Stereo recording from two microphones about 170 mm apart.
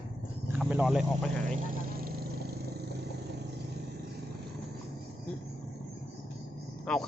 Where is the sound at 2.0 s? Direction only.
65° right (ahead or behind).